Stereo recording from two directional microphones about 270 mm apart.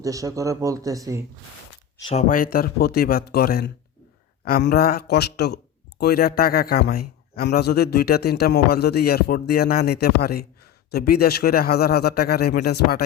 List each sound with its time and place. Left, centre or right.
0.0 s speech: centre
2.0 s a man's voice: left